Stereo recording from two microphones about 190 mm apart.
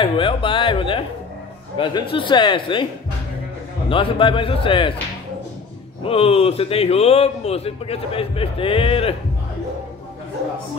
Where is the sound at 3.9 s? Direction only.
25° left (ahead or behind).